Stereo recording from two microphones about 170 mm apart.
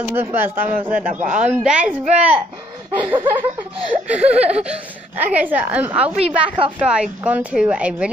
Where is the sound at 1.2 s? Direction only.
45° right (ahead or behind).